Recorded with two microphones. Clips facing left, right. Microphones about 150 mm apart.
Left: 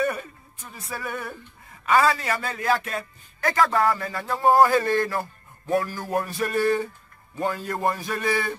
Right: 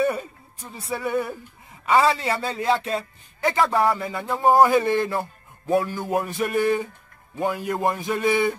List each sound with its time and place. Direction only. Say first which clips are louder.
0.0 s a sound: right 3 dB; 20° right (ahead or behind)
0.7 s speech: right 6 dB; 25° right (ahead or behind)
6.2 s music: even; 20° right (ahead or behind)
7.8 s speech: right 3 dB; 20° right (ahead or behind)